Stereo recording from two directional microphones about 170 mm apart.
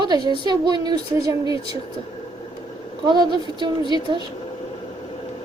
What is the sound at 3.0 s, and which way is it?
A woman's voice, 25° right (ahead or behind).